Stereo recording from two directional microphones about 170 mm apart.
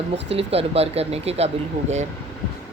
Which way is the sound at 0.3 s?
35° right (ahead or behind).